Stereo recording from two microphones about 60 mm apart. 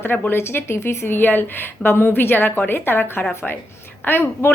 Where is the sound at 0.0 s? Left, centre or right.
Left.